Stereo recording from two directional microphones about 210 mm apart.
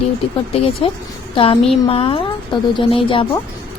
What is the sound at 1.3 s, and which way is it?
Speech, 25° left (ahead or behind).